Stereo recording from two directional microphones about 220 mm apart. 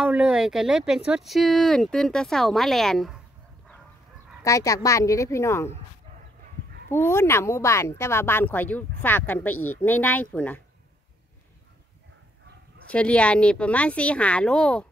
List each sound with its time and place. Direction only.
0.0 s speech: 5° right (ahead or behind)
4.4 s speech: 15° left (ahead or behind)
6.9 s speech: 10° left (ahead or behind)
12.8 s speech: 5° left (ahead or behind)